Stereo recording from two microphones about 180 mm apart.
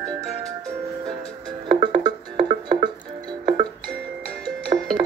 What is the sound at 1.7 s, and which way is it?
Music, 25° right (ahead or behind).